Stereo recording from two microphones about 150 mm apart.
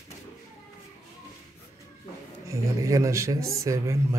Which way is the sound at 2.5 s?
20° right (ahead or behind).